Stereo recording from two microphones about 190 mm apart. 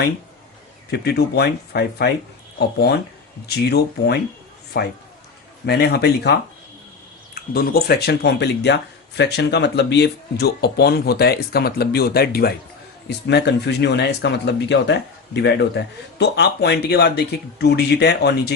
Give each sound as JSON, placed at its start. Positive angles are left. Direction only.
{"t": 0.9, "sound": "speech", "side_deg": 60}
{"t": 7.5, "sound": "speech", "side_deg": 50}